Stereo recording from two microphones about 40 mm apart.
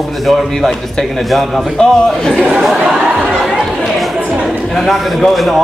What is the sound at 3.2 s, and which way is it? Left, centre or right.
Chatter, centre.